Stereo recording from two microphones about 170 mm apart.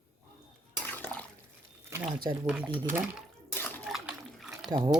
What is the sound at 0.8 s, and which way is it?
Dishes, 10° left (ahead or behind).